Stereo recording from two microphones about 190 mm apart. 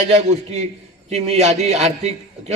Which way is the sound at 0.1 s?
35° right (ahead or behind).